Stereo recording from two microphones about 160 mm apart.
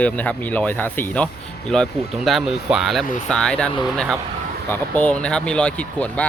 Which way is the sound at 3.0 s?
55° left (ahead or behind).